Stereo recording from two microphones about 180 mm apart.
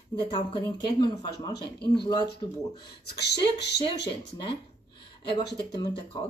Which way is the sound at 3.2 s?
70° left (ahead or behind).